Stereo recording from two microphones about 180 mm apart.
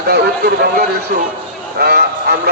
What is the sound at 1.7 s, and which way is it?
Speech, 60° right (ahead or behind).